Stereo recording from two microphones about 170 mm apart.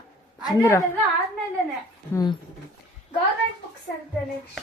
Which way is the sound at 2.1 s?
15° left (ahead or behind).